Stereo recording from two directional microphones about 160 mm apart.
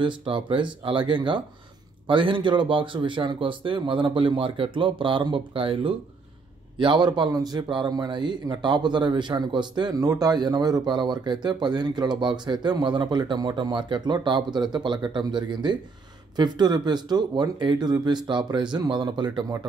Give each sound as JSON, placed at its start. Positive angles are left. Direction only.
{"t": 0.0, "sound": "a man's voice", "side_deg": -35}